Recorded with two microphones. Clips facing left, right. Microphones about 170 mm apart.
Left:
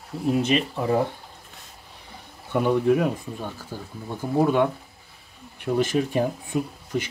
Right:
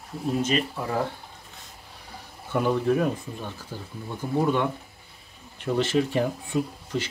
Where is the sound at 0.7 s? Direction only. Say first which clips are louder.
Left 5 dB; 20° left (ahead or behind).